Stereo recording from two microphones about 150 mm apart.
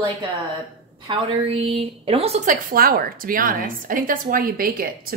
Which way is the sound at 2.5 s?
75° right (ahead or behind).